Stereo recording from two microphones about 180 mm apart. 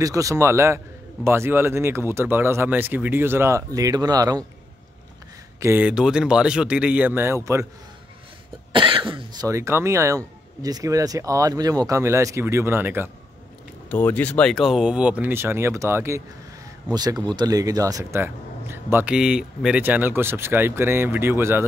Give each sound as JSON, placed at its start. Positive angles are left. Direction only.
{"t": 0.0, "sound": "speech", "side_deg": -20}
{"t": 5.6, "sound": "speech", "side_deg": -10}
{"t": 8.7, "sound": "cough", "side_deg": -25}
{"t": 9.5, "sound": "speech", "side_deg": -15}
{"t": 13.8, "sound": "speech", "side_deg": 10}
{"t": 16.9, "sound": "cough", "side_deg": -20}
{"t": 17.4, "sound": "speech", "side_deg": -20}